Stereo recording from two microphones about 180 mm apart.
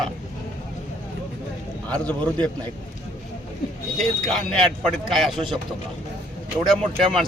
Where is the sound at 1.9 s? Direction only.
10° left (ahead or behind).